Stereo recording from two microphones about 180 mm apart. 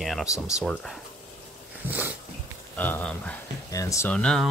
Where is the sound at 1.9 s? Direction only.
10° right (ahead or behind).